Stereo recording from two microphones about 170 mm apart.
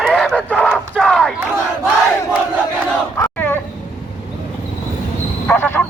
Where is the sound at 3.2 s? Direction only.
10° left (ahead or behind).